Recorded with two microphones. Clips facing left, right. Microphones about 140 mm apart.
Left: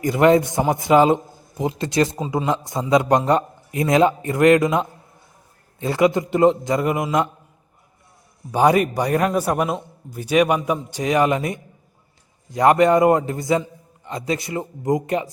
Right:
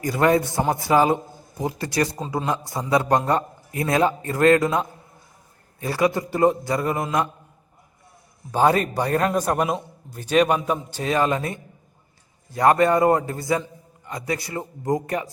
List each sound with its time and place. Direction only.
0.0 s a man's voice: 20° left (ahead or behind)
8.5 s a man's voice: 15° left (ahead or behind)